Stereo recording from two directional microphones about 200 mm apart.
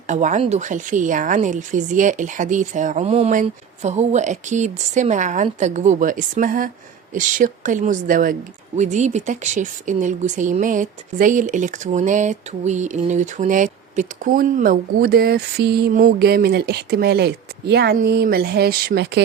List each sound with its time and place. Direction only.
0.1 s speech: 40° right (ahead or behind); by 19.2 s 55° right (ahead or behind)